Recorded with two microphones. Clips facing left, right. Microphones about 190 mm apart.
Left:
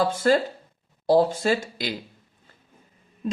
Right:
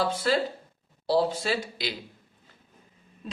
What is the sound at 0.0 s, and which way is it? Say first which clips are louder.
Speech: left 5 dB; 50° left (ahead or behind).